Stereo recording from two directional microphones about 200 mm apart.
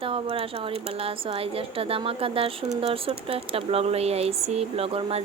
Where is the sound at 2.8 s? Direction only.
30° right (ahead or behind).